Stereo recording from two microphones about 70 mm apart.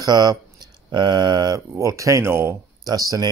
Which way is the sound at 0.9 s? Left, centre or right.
Right.